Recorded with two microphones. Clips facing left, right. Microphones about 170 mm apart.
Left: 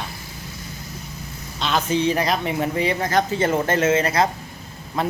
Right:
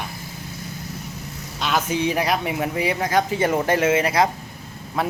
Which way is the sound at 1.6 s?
10° right (ahead or behind).